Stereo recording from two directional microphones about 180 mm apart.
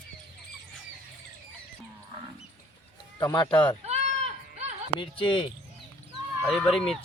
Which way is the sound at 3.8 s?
35° right (ahead or behind).